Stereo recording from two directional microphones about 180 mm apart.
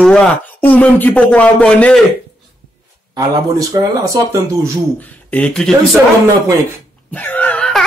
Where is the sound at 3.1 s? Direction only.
20° right (ahead or behind).